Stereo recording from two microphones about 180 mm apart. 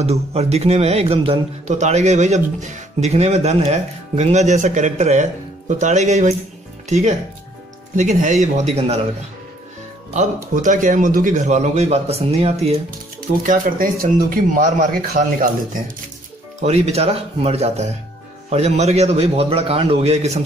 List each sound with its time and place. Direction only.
0.0 s a man's voice: 35° right (ahead or behind)
10.1 s a man's voice: 45° right (ahead or behind)
13.4 s a man's voice: 50° right (ahead or behind)
16.6 s a man's voice: 35° right (ahead or behind)